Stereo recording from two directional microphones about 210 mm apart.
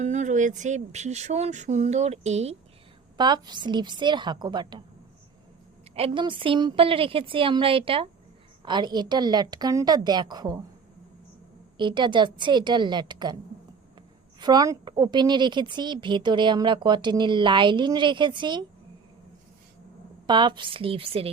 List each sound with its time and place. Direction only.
0.0 s speech: 35° right (ahead or behind)
3.2 s a woman's voice: 20° right (ahead or behind)
5.9 s a woman's voice: 25° right (ahead or behind)
11.8 s a woman's voice: 20° right (ahead or behind)
14.3 s a woman's voice: 20° right (ahead or behind)
20.2 s a woman's voice: 20° right (ahead or behind)